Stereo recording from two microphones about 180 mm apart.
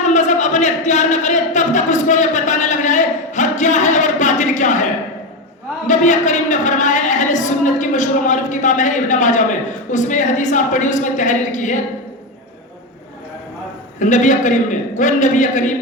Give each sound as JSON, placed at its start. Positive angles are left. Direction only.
{"t": 0.0, "sound": "a sound", "side_deg": 40}
{"t": 5.8, "sound": "speech", "side_deg": 45}
{"t": 14.0, "sound": "a man's voice", "side_deg": 45}